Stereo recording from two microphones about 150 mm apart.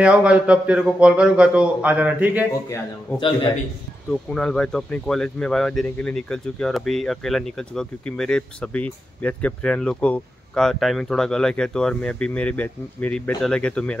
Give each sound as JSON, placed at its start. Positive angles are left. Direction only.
{"t": 0.0, "sound": "a man's voice", "side_deg": -5}
{"t": 4.1, "sound": "speech", "side_deg": 5}